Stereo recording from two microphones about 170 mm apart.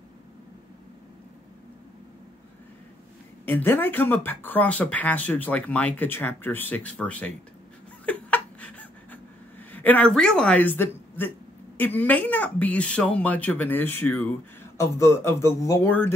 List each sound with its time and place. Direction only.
3.4 s speech: 10° left (ahead or behind)
8.0 s a sound: 10° left (ahead or behind)
9.7 s speech: 10° left (ahead or behind)